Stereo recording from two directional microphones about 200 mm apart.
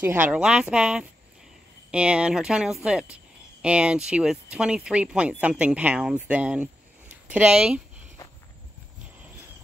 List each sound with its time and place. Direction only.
0.0 s speech: 10° right (ahead or behind)
8.2 s walk: 15° left (ahead or behind)